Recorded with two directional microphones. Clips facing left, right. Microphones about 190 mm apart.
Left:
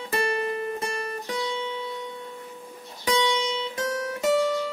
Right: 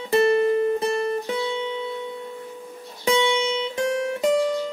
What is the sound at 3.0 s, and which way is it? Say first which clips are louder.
Music: right 4 dB; 25° right (ahead or behind).